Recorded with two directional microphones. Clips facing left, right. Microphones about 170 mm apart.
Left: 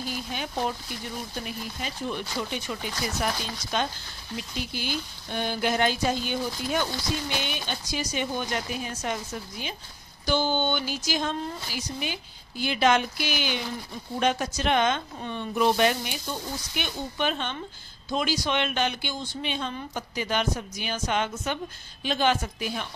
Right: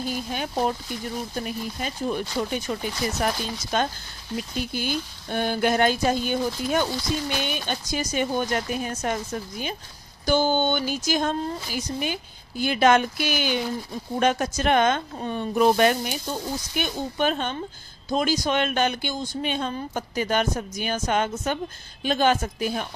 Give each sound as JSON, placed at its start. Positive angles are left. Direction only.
{"t": 0.3, "sound": "speech", "side_deg": -45}